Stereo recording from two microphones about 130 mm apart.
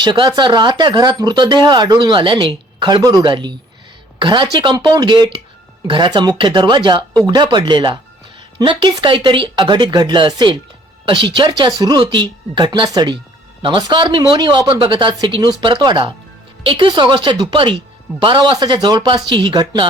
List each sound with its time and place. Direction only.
0.0 s speech: 35° right (ahead or behind)